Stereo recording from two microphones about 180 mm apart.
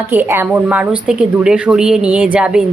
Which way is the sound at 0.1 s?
10° right (ahead or behind).